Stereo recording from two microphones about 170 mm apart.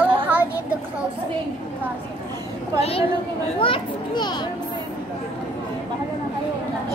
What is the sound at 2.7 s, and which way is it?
A woman's voice, 35° left (ahead or behind).